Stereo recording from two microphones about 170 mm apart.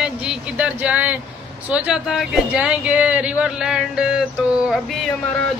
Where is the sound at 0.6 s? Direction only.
10° right (ahead or behind).